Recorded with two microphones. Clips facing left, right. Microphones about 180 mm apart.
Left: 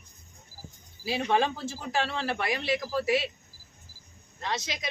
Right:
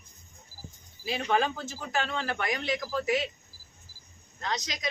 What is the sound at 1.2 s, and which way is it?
Speech, 30° left (ahead or behind).